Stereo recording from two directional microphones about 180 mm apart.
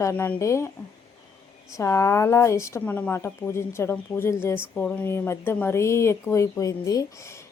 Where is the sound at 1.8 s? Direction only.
15° left (ahead or behind).